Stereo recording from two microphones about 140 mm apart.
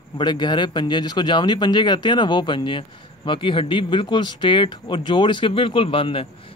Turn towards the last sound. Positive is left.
turn(degrees=40)  # may be behind; listen again after turning